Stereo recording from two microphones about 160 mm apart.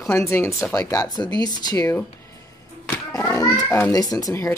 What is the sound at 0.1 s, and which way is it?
Speech, 15° left (ahead or behind).